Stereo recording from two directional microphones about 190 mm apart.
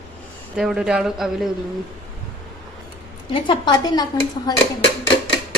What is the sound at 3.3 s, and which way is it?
Speech, 25° left (ahead or behind).